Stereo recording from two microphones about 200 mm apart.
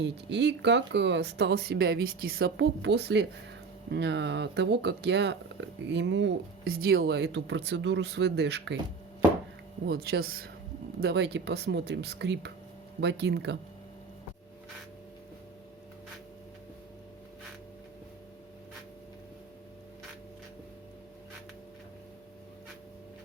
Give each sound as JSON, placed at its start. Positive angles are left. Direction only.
{"t": 0.0, "sound": "speech", "side_deg": -60}
{"t": 9.8, "sound": "speech", "side_deg": -55}